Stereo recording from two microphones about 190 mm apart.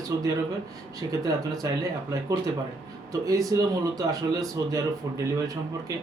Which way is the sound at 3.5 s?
20° right (ahead or behind).